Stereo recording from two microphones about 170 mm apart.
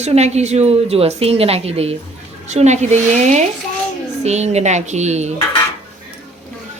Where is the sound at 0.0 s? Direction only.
40° right (ahead or behind).